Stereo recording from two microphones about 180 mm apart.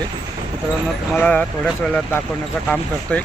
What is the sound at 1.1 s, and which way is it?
A man's voice, 5° left (ahead or behind).